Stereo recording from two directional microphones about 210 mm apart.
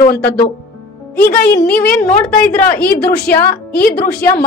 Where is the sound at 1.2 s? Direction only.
10° left (ahead or behind).